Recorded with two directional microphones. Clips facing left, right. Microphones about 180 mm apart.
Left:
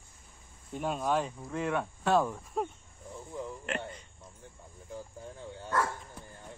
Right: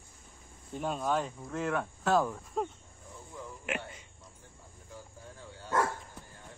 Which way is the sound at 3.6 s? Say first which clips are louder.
Left 1 dB; 5° right (ahead or behind).